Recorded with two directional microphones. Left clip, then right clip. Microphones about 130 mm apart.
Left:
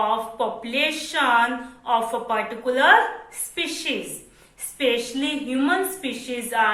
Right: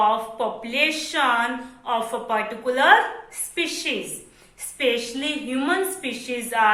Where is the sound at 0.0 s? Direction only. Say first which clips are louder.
Right 2 dB; 25° right (ahead or behind).